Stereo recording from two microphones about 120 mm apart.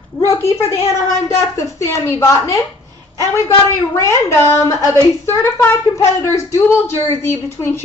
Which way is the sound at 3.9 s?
25° left (ahead or behind).